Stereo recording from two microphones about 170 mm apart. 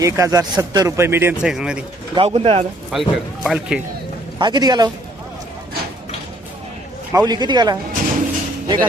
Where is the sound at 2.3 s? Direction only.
35° right (ahead or behind).